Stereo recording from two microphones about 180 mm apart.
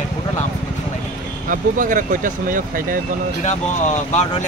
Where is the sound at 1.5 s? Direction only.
45° right (ahead or behind).